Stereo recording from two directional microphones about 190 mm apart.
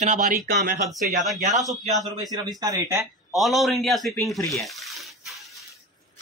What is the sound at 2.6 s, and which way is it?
Speech, 20° right (ahead or behind).